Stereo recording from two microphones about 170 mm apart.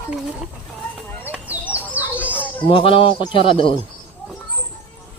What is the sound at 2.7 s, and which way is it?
Speech, 30° left (ahead or behind).